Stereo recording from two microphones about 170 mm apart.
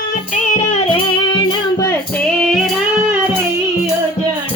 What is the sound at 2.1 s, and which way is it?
Music, 5° left (ahead or behind).